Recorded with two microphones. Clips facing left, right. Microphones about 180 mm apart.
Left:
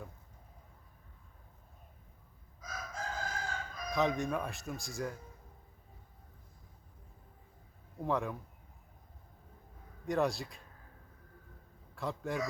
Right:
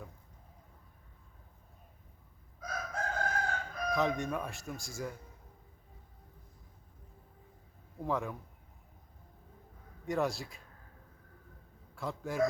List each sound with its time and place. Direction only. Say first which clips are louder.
2.6 s chicken: right 4 dB; 60° right (ahead or behind)
3.9 s speech: left 1 dB; centre (ahead or behind)
8.0 s speech: left 1 dB; centre (ahead or behind)
10.1 s speech: left 1 dB; centre (ahead or behind)
11.9 s speech: left 1 dB; centre (ahead or behind)